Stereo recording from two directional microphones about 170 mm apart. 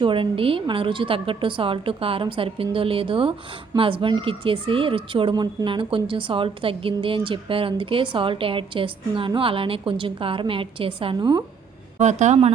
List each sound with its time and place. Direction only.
0.0 s speech: 30° right (ahead or behind)
11.9 s speech: 45° right (ahead or behind)